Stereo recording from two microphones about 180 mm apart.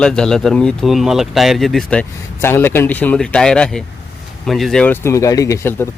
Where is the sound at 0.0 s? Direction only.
5° left (ahead or behind).